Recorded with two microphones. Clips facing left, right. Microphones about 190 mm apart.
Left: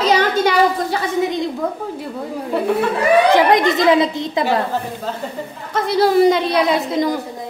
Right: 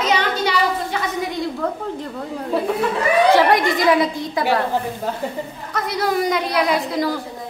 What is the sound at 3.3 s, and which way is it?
A woman's voice, 20° left (ahead or behind).